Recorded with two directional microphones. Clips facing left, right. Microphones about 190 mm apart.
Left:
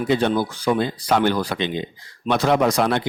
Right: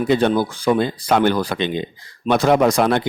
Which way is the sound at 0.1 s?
50° right (ahead or behind).